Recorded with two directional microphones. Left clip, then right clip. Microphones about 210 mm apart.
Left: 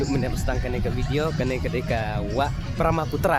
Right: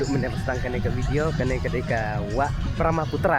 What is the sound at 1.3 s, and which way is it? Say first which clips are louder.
Speech: even; 55° right (ahead or behind).